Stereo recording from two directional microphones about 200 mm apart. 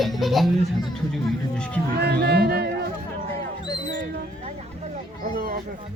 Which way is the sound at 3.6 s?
20° left (ahead or behind).